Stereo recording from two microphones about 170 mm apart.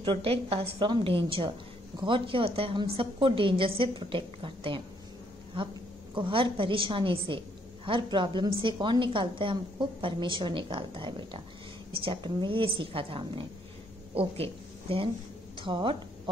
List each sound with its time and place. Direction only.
0.0 s a woman's voice: 30° right (ahead or behind)